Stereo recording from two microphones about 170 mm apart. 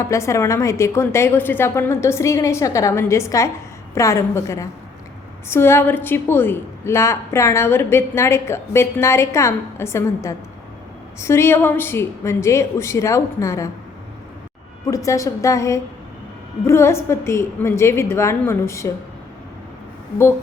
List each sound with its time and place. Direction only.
0.0 s a woman's voice: 20° left (ahead or behind)
14.8 s a woman's voice: 20° left (ahead or behind)